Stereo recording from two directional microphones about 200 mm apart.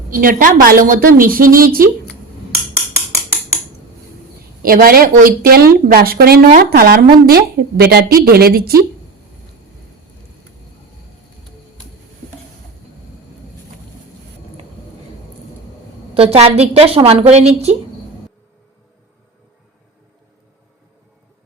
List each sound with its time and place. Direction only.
0.1 s speech: 45° right (ahead or behind)
4.6 s speech: 45° right (ahead or behind)
16.1 s a woman's voice: 30° right (ahead or behind)